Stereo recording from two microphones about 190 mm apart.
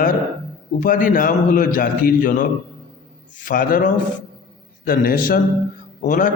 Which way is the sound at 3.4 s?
45° left (ahead or behind).